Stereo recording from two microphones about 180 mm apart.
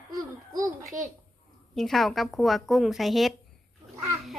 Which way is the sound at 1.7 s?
Centre (ahead or behind).